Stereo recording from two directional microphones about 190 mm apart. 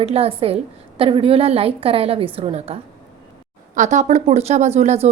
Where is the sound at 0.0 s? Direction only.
30° right (ahead or behind).